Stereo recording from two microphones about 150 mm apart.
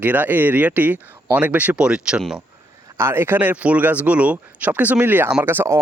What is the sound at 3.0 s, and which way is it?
Speech, 15° right (ahead or behind).